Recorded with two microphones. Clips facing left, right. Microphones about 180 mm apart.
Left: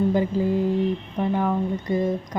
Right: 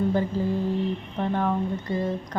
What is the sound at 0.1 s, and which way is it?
A woman's voice, 15° left (ahead or behind).